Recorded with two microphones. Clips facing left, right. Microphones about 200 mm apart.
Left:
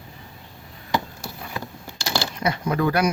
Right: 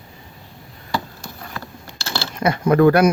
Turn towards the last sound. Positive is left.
turn(degrees=-55)  # may be behind; listen again after turning